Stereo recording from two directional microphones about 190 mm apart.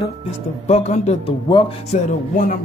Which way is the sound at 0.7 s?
35° left (ahead or behind).